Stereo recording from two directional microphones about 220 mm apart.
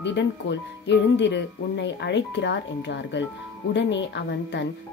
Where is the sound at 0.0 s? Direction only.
55° left (ahead or behind).